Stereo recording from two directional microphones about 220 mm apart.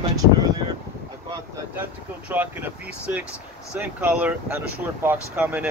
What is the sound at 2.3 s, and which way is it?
Speech, 10° right (ahead or behind).